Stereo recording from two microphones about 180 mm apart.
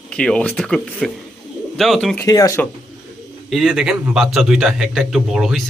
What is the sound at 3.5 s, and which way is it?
A man's voice, centre (ahead or behind).